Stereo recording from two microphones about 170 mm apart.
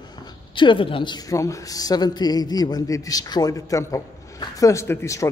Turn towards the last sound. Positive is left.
turn(degrees=15)  # may be behind; listen again after turning